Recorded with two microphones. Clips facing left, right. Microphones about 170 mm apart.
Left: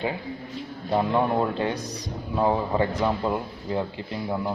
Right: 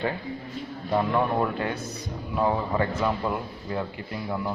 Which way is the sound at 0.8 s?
25° left (ahead or behind).